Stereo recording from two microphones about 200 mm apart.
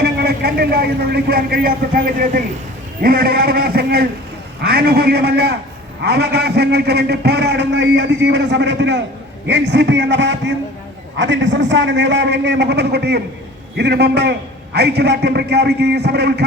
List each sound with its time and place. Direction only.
0.0 s a man's voice: 50° right (ahead or behind)